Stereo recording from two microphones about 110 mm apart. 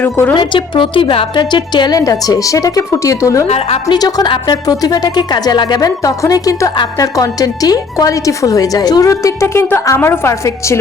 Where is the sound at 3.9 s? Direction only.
40° left (ahead or behind).